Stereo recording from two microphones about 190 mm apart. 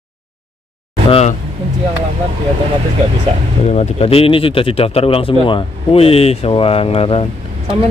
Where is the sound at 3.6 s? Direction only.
35° left (ahead or behind).